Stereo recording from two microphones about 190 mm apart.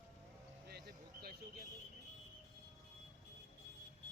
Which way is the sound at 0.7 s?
60° right (ahead or behind).